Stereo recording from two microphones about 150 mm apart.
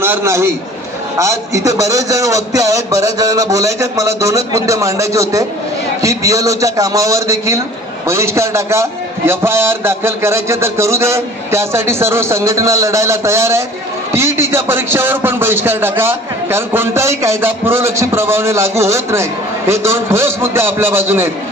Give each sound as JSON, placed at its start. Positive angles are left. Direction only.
{"t": 0.0, "sound": "a man's voice", "side_deg": -15}